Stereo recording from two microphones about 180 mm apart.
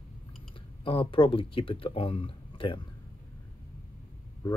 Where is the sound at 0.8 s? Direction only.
30° left (ahead or behind).